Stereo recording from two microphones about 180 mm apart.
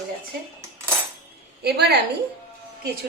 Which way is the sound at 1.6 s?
65° right (ahead or behind).